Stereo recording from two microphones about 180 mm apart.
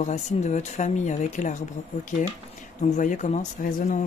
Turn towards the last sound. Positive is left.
turn(degrees=45)  # may be behind; listen again after turning